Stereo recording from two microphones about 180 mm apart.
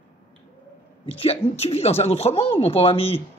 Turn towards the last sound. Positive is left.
turn(degrees=35)  # may be behind; listen again after turning